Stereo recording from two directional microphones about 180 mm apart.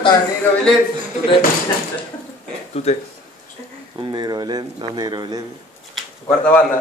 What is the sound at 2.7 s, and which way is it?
Speech, 35° left (ahead or behind).